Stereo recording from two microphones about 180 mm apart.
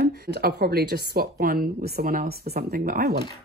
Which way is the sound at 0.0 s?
65° right (ahead or behind).